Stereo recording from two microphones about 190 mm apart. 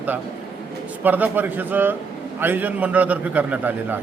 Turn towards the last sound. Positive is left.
turn(degrees=-10)  # may be behind; listen again after turning